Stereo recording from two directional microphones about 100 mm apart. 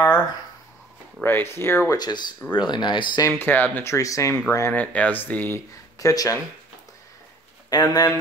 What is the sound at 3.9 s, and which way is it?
Speech, 35° left (ahead or behind).